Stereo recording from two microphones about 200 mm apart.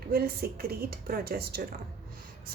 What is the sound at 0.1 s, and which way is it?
A woman's voice, 50° right (ahead or behind).